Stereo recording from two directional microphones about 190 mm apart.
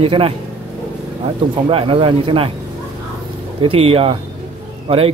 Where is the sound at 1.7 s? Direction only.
30° right (ahead or behind).